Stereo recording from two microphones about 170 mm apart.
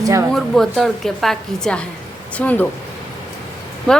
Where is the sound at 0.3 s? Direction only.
Centre (ahead or behind).